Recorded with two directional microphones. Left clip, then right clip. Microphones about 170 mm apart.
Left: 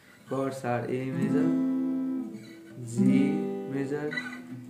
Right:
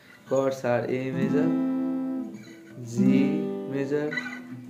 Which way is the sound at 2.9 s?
15° left (ahead or behind).